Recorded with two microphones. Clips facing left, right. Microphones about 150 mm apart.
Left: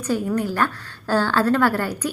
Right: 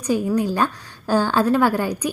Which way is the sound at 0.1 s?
15° right (ahead or behind).